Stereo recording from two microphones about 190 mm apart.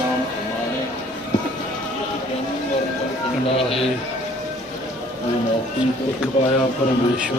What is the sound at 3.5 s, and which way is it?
Speech, 30° left (ahead or behind).